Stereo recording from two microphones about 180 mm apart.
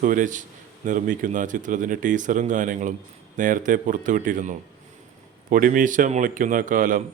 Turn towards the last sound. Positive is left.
turn(degrees=-50)  # may be behind; listen again after turning